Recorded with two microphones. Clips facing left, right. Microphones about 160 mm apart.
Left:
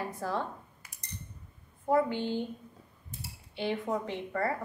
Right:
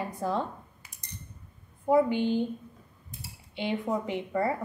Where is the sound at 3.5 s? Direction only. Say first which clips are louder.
Right 2 dB; 20° right (ahead or behind).